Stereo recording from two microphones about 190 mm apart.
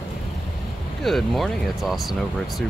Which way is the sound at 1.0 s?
Centre (ahead or behind).